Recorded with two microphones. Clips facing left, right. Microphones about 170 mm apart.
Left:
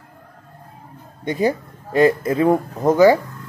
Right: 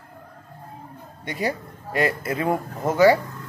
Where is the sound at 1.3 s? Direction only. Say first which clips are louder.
Left 7 dB; 25° left (ahead or behind).